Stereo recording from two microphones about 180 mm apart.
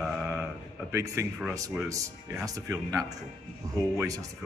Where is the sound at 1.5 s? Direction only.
20° right (ahead or behind).